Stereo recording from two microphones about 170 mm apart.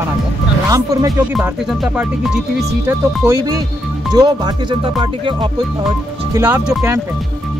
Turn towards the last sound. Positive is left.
turn(degrees=-15)  # may be behind; listen again after turning